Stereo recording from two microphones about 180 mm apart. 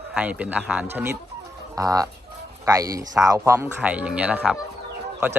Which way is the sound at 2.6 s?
20° right (ahead or behind).